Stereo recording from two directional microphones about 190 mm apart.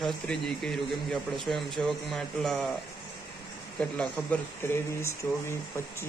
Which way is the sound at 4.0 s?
10° left (ahead or behind).